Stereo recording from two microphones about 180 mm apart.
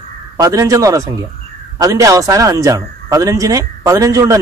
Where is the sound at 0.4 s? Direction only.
20° right (ahead or behind).